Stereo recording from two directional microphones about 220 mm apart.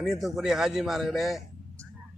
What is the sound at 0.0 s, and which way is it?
A man's voice, centre (ahead or behind).